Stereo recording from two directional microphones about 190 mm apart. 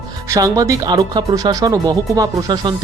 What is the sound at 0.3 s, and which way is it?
Speech, 20° right (ahead or behind).